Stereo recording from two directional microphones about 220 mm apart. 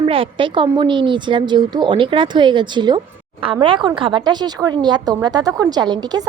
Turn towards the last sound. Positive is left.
turn(degrees=-20)  # may be behind; listen again after turning